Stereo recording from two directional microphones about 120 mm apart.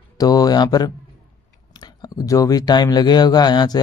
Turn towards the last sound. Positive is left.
turn(degrees=35)  # may be behind; listen again after turning